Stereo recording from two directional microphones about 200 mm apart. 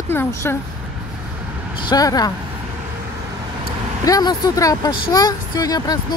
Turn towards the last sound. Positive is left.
turn(degrees=20)  # may be behind; listen again after turning